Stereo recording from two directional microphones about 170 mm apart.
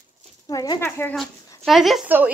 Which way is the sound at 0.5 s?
20° left (ahead or behind).